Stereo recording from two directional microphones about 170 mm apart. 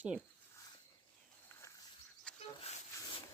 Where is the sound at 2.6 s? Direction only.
35° left (ahead or behind).